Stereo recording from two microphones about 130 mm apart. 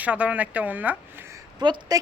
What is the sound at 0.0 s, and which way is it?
Speech, 10° right (ahead or behind).